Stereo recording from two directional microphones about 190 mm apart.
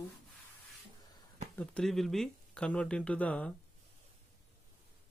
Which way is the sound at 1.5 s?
5° left (ahead or behind).